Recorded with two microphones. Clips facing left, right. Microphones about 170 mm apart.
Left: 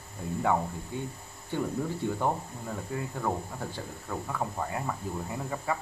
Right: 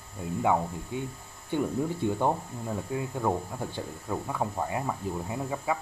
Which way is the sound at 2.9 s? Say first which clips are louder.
Right 3 dB; 15° right (ahead or behind).